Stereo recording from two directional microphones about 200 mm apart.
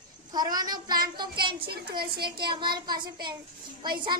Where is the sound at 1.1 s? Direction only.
20° right (ahead or behind).